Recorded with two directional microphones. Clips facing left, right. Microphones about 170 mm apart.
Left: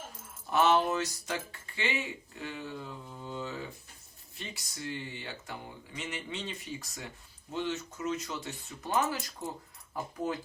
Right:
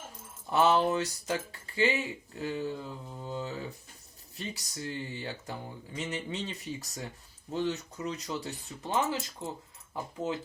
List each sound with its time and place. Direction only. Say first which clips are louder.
0.5 s speech: right 1 dB; 30° right (ahead or behind)
8.9 s speech: even; 20° right (ahead or behind)